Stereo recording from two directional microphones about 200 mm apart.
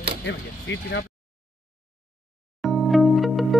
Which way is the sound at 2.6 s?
Centre (ahead or behind).